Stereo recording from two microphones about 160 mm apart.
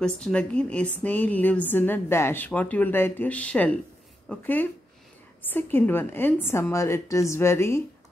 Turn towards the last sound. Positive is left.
turn(degrees=15)  # may be behind; listen again after turning